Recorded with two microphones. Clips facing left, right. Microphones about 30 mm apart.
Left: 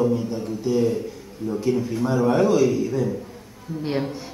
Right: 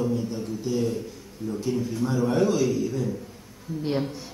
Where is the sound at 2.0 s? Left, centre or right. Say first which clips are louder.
Left 4 dB; centre.